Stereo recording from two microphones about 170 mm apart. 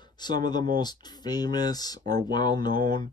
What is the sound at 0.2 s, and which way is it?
Speech, 25° left (ahead or behind).